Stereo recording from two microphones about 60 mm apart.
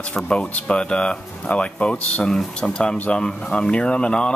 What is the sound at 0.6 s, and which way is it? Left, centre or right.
Speech, centre.